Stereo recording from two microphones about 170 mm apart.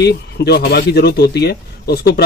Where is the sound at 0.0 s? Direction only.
70° left (ahead or behind).